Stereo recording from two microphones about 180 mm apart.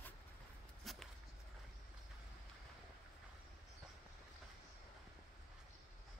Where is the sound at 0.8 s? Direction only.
Centre (ahead or behind).